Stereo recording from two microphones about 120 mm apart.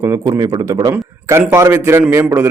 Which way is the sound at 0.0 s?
25° right (ahead or behind).